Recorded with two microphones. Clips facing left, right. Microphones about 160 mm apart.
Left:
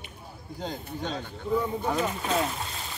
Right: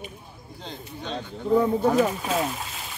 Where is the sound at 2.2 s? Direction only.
5° right (ahead or behind).